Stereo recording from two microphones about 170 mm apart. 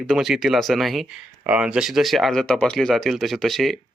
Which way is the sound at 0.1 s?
Centre (ahead or behind).